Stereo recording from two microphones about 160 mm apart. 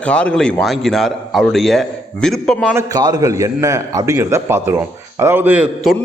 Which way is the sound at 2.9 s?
25° right (ahead or behind).